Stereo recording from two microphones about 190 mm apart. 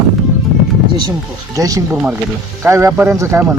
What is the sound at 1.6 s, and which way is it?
Speech, 20° right (ahead or behind).